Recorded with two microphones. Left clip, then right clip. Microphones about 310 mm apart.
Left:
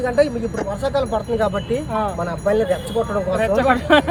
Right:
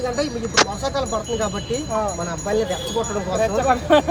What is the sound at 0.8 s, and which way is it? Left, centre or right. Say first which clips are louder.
Speech: left 3 dB; centre.